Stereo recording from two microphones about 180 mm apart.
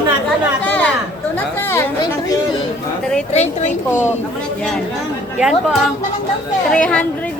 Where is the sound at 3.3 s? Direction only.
45° left (ahead or behind).